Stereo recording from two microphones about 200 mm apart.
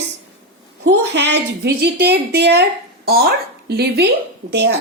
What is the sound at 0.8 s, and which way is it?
A woman's voice, 60° right (ahead or behind).